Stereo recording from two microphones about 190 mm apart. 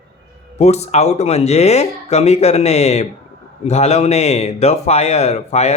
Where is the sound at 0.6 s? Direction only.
35° left (ahead or behind).